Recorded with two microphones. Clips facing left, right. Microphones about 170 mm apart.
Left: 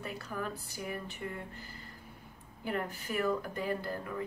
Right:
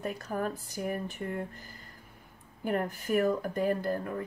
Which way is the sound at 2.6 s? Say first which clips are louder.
Right 5 dB; 50° right (ahead or behind).